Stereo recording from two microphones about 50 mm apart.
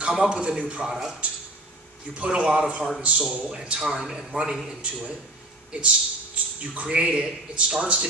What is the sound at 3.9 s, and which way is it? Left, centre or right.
Speech, centre.